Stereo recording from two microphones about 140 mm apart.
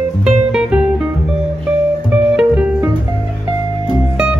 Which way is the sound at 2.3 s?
5° right (ahead or behind).